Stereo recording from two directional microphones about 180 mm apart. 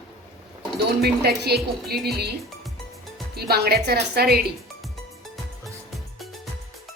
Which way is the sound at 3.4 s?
60° right (ahead or behind).